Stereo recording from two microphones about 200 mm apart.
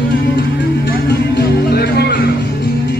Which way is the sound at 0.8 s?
55° left (ahead or behind).